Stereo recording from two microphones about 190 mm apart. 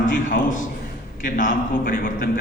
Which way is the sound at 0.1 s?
45° left (ahead or behind).